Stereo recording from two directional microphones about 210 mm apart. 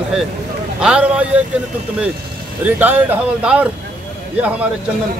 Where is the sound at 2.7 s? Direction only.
10° right (ahead or behind).